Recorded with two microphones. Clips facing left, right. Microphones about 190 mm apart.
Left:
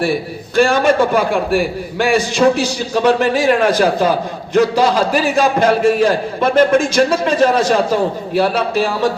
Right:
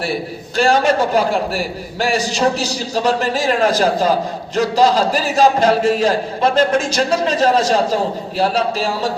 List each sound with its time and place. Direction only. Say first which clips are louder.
0.5 s a man's voice: left 2 dB; 55° left (ahead or behind)